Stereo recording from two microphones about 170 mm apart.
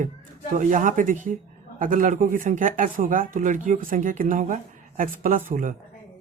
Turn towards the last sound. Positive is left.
turn(degrees=-50)  # may be behind; listen again after turning